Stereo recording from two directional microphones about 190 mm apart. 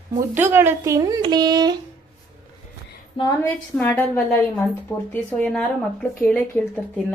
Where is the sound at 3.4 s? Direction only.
10° left (ahead or behind).